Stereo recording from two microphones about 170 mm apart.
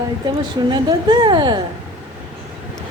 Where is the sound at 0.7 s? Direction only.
25° right (ahead or behind).